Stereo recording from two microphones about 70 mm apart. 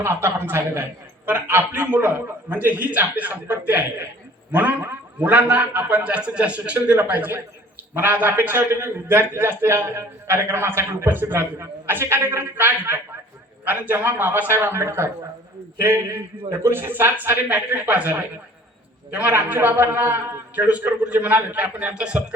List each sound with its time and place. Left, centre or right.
0.0 s a man's voice: right; by 22.2 s centre